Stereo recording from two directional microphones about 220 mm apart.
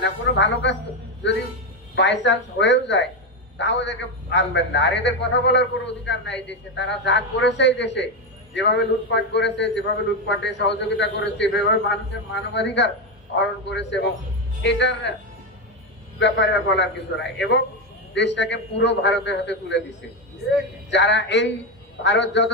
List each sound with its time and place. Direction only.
0.0 s a man's voice: 55° left (ahead or behind)
16.2 s a man's voice: 55° left (ahead or behind)
20.9 s a man's voice: 55° left (ahead or behind)